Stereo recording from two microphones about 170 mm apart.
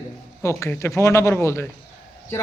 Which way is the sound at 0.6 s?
15° left (ahead or behind).